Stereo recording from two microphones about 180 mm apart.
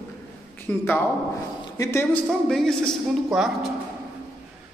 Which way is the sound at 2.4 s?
Centre (ahead or behind).